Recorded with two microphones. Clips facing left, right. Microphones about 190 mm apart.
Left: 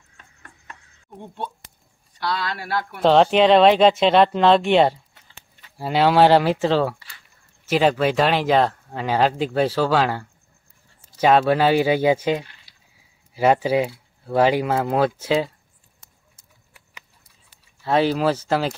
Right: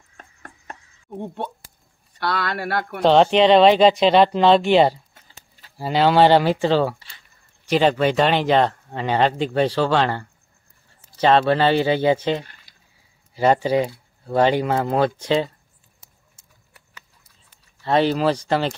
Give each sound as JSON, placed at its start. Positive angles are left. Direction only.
{"t": 0.2, "sound": "music", "side_deg": -45}
{"t": 1.1, "sound": "speech", "side_deg": -50}
{"t": 3.0, "sound": "speech", "side_deg": 0}
{"t": 12.7, "sound": "a sound", "side_deg": -50}
{"t": 13.3, "sound": "speech", "side_deg": 5}
{"t": 16.9, "sound": "a sound", "side_deg": 15}
{"t": 17.8, "sound": "speech", "side_deg": 0}